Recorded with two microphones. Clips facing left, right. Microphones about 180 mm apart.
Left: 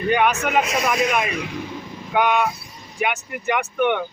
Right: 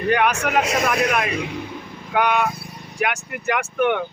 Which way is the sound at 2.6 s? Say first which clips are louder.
Right 6 dB; 60° right (ahead or behind).